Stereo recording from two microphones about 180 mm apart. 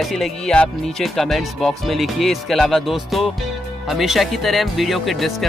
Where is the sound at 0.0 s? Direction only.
Centre (ahead or behind).